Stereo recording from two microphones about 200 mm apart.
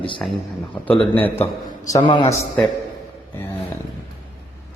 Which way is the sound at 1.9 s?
25° left (ahead or behind).